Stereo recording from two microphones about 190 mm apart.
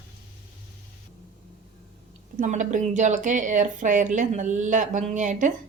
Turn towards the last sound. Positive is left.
turn(degrees=-40)  # may be behind; listen again after turning